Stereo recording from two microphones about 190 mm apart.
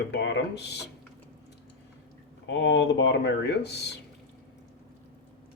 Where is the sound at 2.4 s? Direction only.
65° left (ahead or behind).